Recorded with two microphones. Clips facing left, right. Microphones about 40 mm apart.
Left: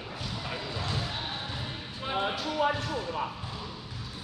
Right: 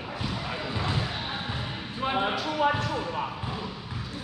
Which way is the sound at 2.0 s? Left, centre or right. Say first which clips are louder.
Right 4 dB; right.